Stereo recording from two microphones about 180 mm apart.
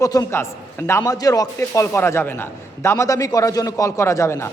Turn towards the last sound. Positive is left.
turn(degrees=15)  # may be behind; listen again after turning